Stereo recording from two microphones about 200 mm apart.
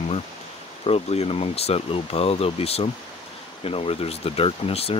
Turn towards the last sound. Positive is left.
turn(degrees=30)  # may be behind; listen again after turning